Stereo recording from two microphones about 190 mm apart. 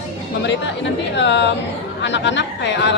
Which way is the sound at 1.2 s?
65° left (ahead or behind).